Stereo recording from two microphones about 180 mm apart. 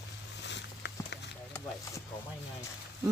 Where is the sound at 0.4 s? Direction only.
75° left (ahead or behind).